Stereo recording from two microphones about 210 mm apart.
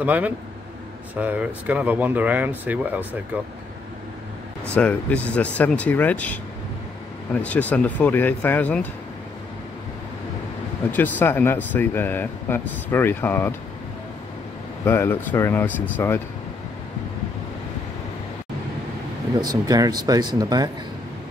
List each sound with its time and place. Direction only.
0.0 s speech: 5° right (ahead or behind)
4.7 s speech: 5° left (ahead or behind)
7.4 s speech: 5° left (ahead or behind)
10.9 s speech: 10° left (ahead or behind)
14.9 s speech: 10° left (ahead or behind)
19.4 s speech: 20° right (ahead or behind)